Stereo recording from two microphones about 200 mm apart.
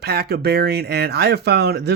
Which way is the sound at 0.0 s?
55° right (ahead or behind).